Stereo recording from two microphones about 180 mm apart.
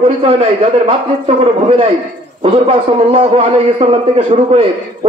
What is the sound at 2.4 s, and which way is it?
A man's voice, 30° right (ahead or behind).